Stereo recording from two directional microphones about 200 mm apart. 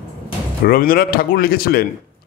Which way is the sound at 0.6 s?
45° left (ahead or behind).